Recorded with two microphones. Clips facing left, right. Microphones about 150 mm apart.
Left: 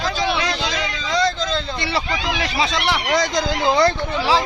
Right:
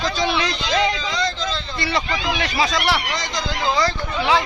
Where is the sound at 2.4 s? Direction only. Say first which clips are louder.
Right 1 dB; 25° left (ahead or behind).